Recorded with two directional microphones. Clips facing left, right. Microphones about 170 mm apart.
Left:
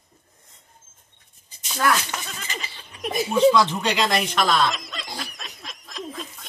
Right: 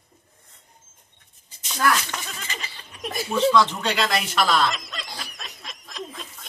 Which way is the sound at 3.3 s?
10° left (ahead or behind).